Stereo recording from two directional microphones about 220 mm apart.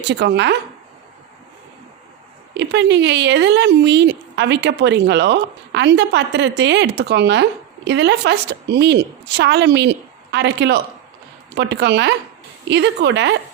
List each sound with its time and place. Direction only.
0.0 s speech: 50° right (ahead or behind)
2.6 s speech: 55° right (ahead or behind)